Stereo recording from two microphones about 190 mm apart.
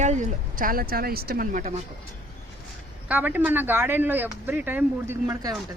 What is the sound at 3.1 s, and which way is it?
Speech, 10° right (ahead or behind).